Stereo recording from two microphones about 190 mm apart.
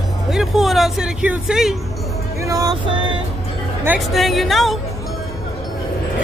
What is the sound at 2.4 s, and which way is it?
Vehicle, 15° right (ahead or behind).